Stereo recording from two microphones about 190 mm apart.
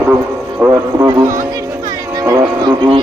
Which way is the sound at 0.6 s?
15° right (ahead or behind).